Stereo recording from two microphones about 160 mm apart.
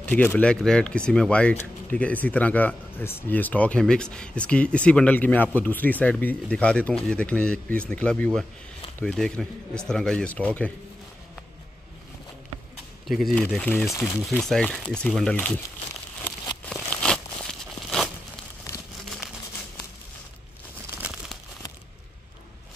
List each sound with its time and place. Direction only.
0.0 s speech: 10° left (ahead or behind)
13.0 s speech: centre (ahead or behind)
16.7 s crumpling: 5° left (ahead or behind)
18.7 s crumpling: 20° left (ahead or behind)
21.0 s crumpling: 5° right (ahead or behind)